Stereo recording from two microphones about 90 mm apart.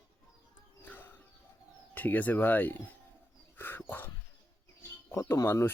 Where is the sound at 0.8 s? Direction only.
20° left (ahead or behind).